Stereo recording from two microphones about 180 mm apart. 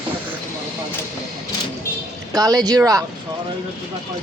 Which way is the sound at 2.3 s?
20° right (ahead or behind).